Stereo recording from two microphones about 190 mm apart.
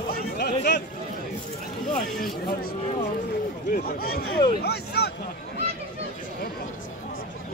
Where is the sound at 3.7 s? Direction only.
50° left (ahead or behind).